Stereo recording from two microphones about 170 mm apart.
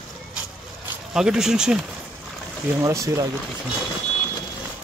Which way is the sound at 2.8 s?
20° right (ahead or behind).